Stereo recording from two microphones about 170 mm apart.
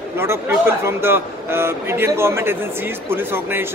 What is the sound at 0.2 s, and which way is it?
A man's voice, 15° right (ahead or behind).